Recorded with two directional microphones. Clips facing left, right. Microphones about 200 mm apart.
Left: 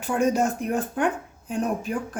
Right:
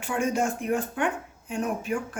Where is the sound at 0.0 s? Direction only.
40° left (ahead or behind).